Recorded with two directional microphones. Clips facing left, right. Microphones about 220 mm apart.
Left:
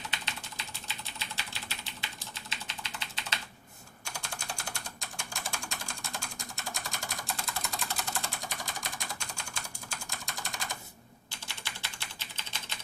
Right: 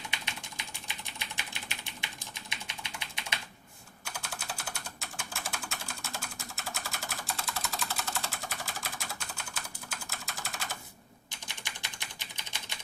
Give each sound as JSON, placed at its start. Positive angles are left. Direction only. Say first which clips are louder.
{"t": 0.1, "sound": "typing", "louder": "left 1 dB", "side_deg": -15}
{"t": 11.3, "sound": "typing", "louder": "left 1 dB", "side_deg": -15}